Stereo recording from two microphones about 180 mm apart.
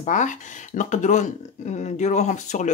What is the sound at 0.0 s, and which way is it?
Speech, 45° left (ahead or behind).